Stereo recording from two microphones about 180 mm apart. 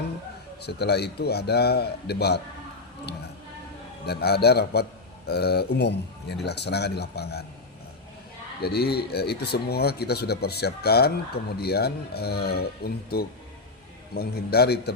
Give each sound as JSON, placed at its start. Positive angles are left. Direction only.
{"t": 0.6, "sound": "speech", "side_deg": 65}
{"t": 4.0, "sound": "speech", "side_deg": 65}
{"t": 8.6, "sound": "speech", "side_deg": 60}